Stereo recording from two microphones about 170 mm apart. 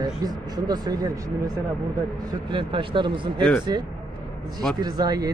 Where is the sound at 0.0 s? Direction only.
25° right (ahead or behind).